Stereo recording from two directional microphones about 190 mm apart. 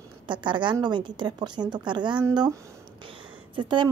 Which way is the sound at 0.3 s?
25° right (ahead or behind).